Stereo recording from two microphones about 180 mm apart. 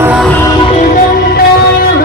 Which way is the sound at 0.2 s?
10° left (ahead or behind).